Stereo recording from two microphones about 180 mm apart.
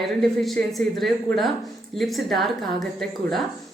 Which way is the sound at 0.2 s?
Centre (ahead or behind).